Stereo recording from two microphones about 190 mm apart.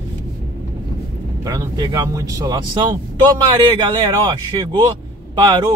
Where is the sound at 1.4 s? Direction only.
20° right (ahead or behind).